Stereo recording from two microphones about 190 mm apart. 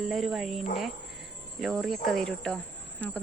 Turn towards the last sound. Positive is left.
turn(degrees=5)  # may be behind; listen again after turning